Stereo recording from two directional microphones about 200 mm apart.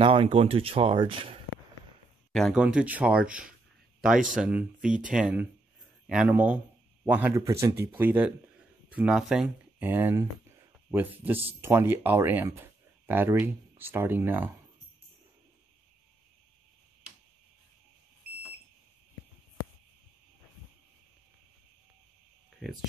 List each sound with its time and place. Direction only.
0.0 s speech: 25° right (ahead or behind)
2.3 s speech: centre (ahead or behind)
22.6 s speech: centre (ahead or behind)